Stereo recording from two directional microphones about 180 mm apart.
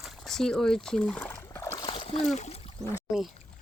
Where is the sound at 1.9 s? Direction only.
30° left (ahead or behind).